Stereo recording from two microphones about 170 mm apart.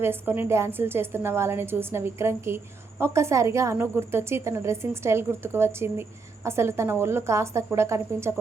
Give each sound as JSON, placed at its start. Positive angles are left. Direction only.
{"t": 0.0, "sound": "a woman's voice", "side_deg": -15}